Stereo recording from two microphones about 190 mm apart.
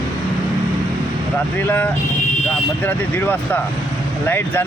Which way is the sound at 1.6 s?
10° left (ahead or behind).